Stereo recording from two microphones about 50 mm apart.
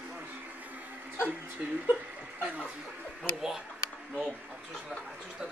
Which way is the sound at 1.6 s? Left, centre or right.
Right.